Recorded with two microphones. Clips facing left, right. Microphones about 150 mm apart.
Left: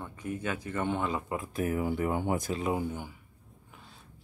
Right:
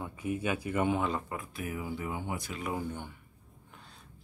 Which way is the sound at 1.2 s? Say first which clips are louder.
Left 5 dB; 25° left (ahead or behind).